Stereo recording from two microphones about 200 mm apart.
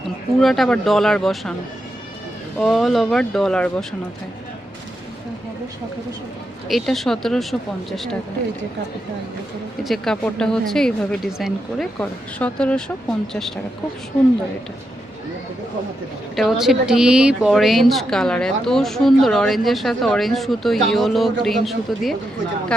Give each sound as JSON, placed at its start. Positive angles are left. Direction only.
{"t": 0.3, "sound": "speech", "side_deg": 0}
{"t": 2.6, "sound": "speech", "side_deg": 0}
{"t": 6.7, "sound": "speech", "side_deg": 0}
{"t": 9.8, "sound": "speech", "side_deg": 0}
{"t": 16.3, "sound": "speech", "side_deg": 0}